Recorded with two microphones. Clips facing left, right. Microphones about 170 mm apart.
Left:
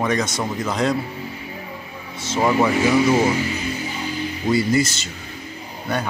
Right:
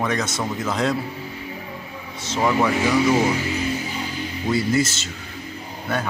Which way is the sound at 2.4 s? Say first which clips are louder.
Left 2 dB; 20° left (ahead or behind).